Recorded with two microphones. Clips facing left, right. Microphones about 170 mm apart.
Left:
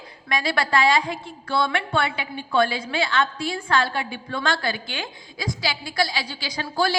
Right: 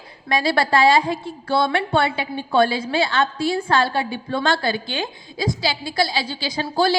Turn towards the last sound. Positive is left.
turn(degrees=-30)  # may be behind; listen again after turning